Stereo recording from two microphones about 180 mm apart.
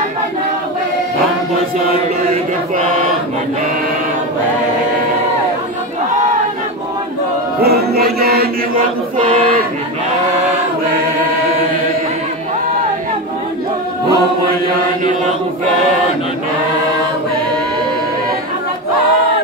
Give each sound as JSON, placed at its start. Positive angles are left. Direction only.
{"t": 7.6, "sound": "chant", "side_deg": -60}